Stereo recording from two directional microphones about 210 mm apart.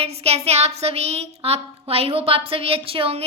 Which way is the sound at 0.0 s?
30° right (ahead or behind).